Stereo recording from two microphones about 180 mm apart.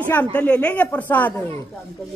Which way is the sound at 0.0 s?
10° left (ahead or behind).